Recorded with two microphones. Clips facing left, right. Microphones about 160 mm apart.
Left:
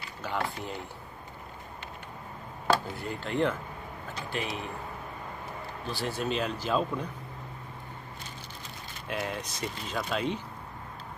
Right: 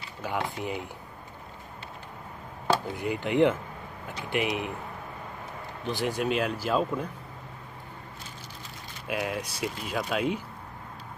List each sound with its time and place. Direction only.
0.2 s speech: 15° right (ahead or behind)
2.7 s speech: 15° right (ahead or behind)
5.9 s speech: 15° right (ahead or behind)
9.0 s speech: 5° right (ahead or behind)